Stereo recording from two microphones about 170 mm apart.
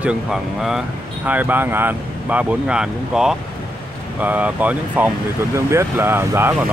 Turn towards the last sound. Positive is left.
turn(degrees=-15)  # may be behind; listen again after turning